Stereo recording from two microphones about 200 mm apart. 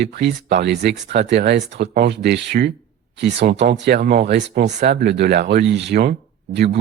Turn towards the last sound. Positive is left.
turn(degrees=-55)  # may be behind; listen again after turning